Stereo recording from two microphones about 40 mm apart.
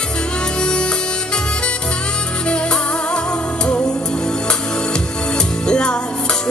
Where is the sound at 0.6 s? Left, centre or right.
Left.